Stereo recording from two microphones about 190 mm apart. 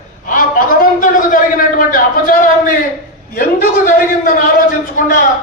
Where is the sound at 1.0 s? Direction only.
45° left (ahead or behind).